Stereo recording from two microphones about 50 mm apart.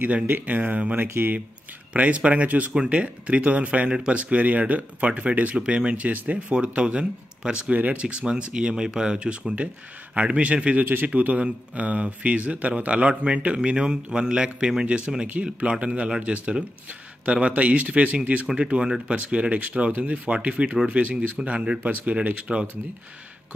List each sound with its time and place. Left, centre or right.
0.3 s speech: right
1.0 s speech: right
2.0 s speech: right